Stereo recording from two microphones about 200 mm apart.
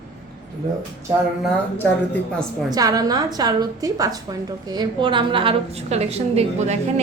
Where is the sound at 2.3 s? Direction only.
5° left (ahead or behind).